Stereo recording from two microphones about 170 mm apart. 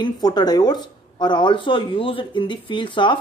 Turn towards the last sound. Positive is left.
turn(degrees=30)  # may be behind; listen again after turning